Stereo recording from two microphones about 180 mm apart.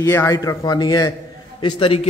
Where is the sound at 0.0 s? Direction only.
15° left (ahead or behind).